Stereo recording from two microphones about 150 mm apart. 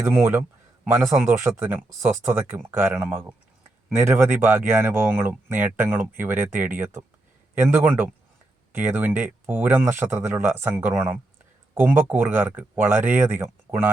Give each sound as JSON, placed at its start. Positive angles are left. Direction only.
{"t": 0.0, "sound": "speech", "side_deg": -15}